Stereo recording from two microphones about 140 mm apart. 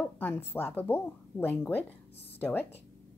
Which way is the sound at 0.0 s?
15° left (ahead or behind).